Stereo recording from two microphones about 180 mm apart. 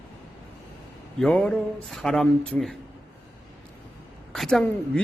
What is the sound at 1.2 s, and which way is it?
Speech, 5° left (ahead or behind).